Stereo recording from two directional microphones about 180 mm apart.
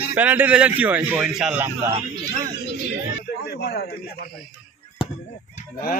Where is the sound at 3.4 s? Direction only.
65° left (ahead or behind).